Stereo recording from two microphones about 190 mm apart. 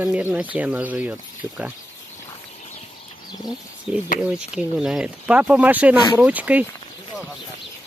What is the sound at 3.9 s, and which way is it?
Speech, 5° right (ahead or behind).